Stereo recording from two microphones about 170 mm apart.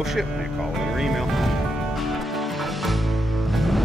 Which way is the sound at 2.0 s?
Centre (ahead or behind).